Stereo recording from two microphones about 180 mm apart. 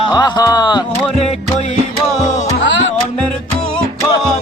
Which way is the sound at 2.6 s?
90° left.